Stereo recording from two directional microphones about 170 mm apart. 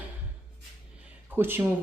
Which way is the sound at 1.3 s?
15° right (ahead or behind).